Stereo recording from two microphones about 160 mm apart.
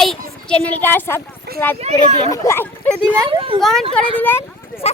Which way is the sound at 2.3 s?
20° left (ahead or behind).